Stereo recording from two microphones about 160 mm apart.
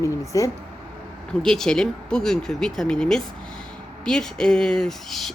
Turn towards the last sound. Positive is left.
turn(degrees=0)  # may be behind; listen again after turning